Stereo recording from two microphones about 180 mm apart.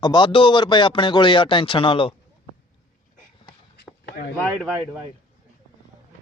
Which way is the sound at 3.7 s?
65° left (ahead or behind).